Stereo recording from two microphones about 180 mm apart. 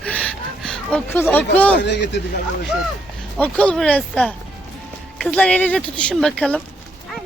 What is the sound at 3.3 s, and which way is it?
Speech, 5° left (ahead or behind).